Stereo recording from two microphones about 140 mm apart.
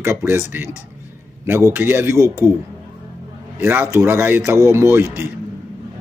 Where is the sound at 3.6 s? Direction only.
15° right (ahead or behind).